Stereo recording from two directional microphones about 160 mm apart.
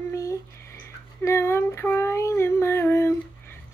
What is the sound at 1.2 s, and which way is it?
Child singing, 15° left (ahead or behind).